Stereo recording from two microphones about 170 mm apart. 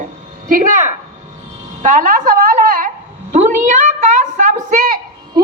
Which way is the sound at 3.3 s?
45° right (ahead or behind).